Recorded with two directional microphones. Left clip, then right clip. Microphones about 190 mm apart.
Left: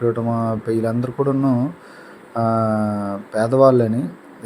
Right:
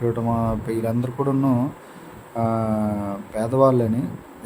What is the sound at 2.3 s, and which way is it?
Speech, 15° left (ahead or behind).